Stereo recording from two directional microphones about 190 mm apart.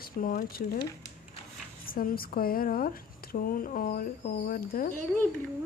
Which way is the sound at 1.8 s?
50° left (ahead or behind).